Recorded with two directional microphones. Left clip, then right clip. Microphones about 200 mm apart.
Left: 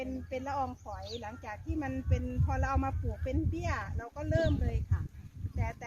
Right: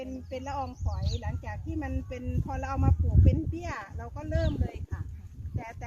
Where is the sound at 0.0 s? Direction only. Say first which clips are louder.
Even; 20° left (ahead or behind).